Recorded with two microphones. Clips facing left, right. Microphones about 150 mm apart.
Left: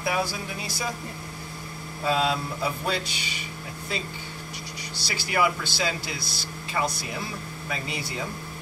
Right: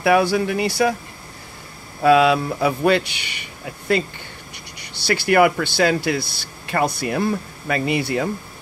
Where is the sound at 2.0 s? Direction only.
70° right (ahead or behind).